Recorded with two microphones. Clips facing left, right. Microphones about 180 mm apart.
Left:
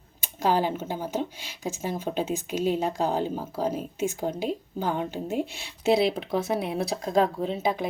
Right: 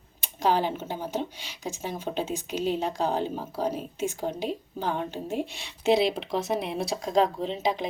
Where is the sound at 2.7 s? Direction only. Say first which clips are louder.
Left 1 dB; 10° left (ahead or behind).